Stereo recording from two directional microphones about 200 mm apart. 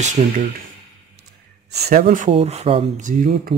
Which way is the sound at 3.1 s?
45° right (ahead or behind).